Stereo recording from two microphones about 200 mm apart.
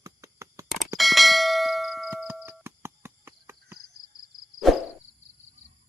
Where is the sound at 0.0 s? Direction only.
15° right (ahead or behind).